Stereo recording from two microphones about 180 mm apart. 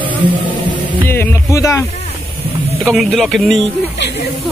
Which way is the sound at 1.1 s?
15° left (ahead or behind).